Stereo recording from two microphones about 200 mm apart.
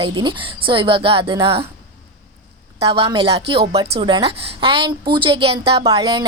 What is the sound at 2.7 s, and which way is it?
A woman's voice, 25° right (ahead or behind).